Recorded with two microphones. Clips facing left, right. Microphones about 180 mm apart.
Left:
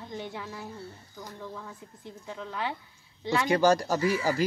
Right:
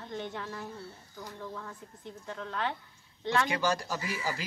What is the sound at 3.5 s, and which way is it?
Speech, 40° left (ahead or behind).